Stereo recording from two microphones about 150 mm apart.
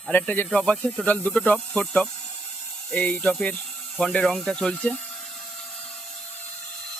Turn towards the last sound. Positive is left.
turn(degrees=5)  # may be behind; listen again after turning